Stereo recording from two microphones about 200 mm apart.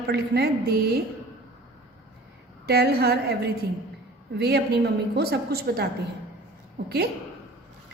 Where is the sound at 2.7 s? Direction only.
50° right (ahead or behind).